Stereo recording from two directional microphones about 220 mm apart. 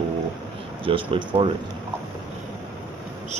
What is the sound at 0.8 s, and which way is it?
Speech, 25° right (ahead or behind).